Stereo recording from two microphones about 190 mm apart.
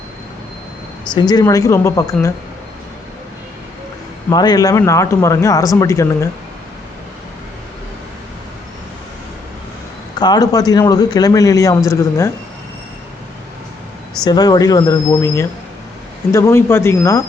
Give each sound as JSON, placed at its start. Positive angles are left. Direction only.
{"t": 1.1, "sound": "a man's voice", "side_deg": 20}
{"t": 4.3, "sound": "speech", "side_deg": 20}
{"t": 10.2, "sound": "a man's voice", "side_deg": 20}
{"t": 14.3, "sound": "a man's voice", "side_deg": 20}